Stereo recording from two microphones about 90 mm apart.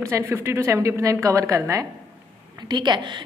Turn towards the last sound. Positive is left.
turn(degrees=-55)  # may be behind; listen again after turning